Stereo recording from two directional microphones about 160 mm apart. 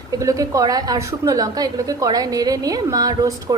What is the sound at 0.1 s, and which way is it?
A woman's voice, 20° right (ahead or behind).